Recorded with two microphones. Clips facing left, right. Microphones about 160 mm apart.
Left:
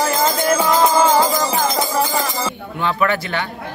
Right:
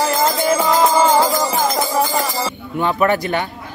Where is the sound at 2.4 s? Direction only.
15° right (ahead or behind).